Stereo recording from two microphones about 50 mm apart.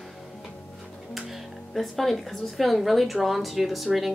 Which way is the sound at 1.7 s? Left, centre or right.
Centre.